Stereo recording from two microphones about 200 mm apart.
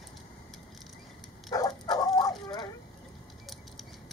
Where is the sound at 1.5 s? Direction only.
20° left (ahead or behind).